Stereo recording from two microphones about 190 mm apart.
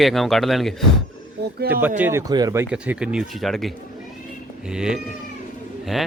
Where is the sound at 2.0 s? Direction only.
15° right (ahead or behind).